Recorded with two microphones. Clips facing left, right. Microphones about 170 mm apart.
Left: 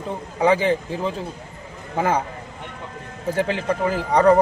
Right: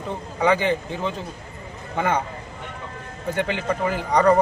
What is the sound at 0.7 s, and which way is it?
Speech, centre (ahead or behind).